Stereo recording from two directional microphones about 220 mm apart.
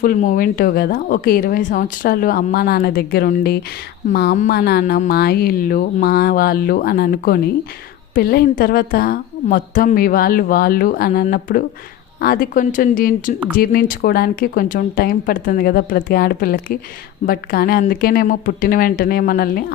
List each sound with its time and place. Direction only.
0.0 s speech: 35° left (ahead or behind)